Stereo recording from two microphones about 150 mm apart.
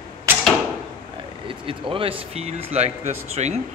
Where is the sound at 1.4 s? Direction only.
35° right (ahead or behind).